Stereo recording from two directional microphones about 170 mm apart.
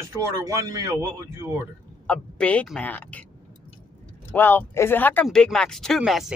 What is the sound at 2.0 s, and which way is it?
Speech, 5° left (ahead or behind).